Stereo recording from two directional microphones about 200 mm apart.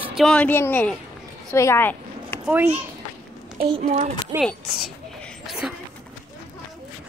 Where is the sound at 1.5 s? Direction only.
15° left (ahead or behind).